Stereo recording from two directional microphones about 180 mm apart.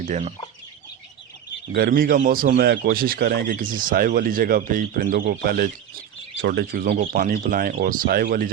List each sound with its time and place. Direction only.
0.0 s chicken: 40° right (ahead or behind)
1.7 s speech: 55° right (ahead or behind)